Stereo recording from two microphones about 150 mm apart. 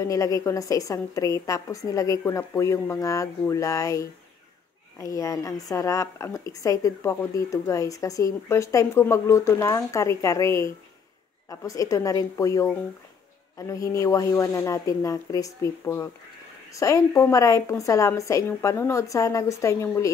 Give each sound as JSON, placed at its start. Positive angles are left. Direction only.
{"t": 0.0, "sound": "a woman's voice", "side_deg": 20}